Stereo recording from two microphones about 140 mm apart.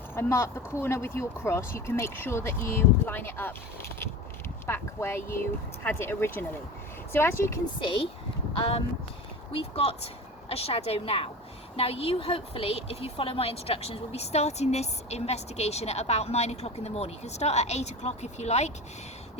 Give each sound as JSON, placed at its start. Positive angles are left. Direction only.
{"t": 0.1, "sound": "speech", "side_deg": 20}
{"t": 4.6, "sound": "speech", "side_deg": 15}
{"t": 7.8, "sound": "speech", "side_deg": 40}
{"t": 9.6, "sound": "a woman's voice", "side_deg": 45}